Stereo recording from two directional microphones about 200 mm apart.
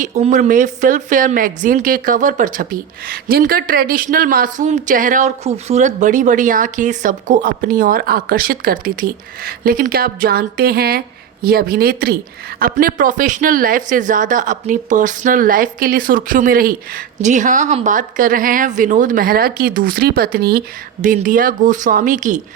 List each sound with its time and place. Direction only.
0.0 s a woman's voice: 35° right (ahead or behind)